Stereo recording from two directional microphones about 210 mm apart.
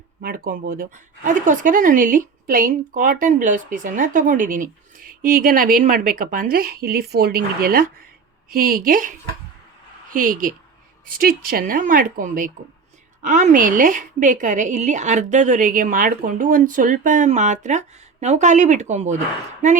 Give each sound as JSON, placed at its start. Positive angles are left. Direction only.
{"t": 0.2, "sound": "speech", "side_deg": -45}